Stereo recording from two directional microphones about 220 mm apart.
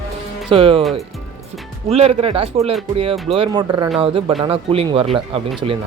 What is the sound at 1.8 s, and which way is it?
Speech, 30° right (ahead or behind).